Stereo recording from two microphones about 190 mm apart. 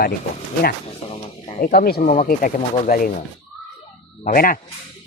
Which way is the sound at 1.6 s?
50° left (ahead or behind).